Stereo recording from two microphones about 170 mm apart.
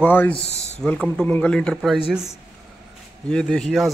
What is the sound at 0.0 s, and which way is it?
Speech, 10° left (ahead or behind).